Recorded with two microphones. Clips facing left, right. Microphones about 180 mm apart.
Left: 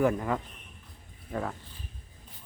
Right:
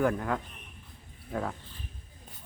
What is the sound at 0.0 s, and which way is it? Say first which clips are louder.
Speech: left 2 dB; 5° left (ahead or behind).